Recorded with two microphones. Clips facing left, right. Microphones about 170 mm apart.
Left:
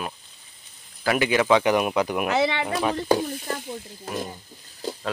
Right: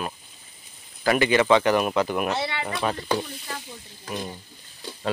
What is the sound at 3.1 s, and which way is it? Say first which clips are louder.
Speech: left 5 dB; 45° left (ahead or behind).